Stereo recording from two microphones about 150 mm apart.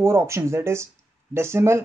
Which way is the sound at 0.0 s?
20° right (ahead or behind).